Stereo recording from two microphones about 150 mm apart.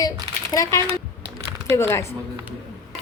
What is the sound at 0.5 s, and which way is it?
A woman's voice, 20° left (ahead or behind).